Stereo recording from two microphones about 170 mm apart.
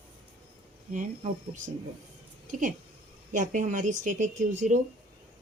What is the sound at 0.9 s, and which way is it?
A woman's voice, 45° right (ahead or behind).